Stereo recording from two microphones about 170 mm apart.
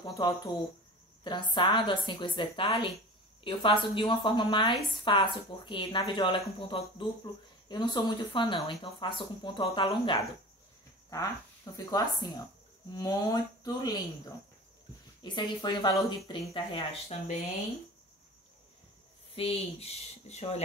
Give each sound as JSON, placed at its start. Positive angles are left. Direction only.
{"t": 0.0, "sound": "speech", "side_deg": 25}
{"t": 15.3, "sound": "speech", "side_deg": 25}
{"t": 19.3, "sound": "speech", "side_deg": 35}